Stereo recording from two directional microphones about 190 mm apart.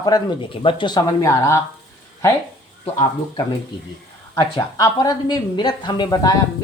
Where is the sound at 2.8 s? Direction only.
30° left (ahead or behind).